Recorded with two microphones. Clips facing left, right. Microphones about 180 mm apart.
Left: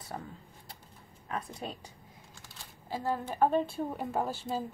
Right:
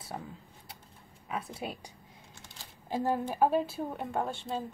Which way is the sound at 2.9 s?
15° right (ahead or behind).